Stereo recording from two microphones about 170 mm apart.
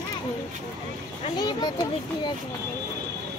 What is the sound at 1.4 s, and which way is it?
Speech, 25° left (ahead or behind).